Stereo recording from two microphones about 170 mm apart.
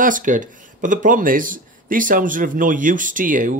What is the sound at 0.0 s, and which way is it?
Speech, 50° right (ahead or behind).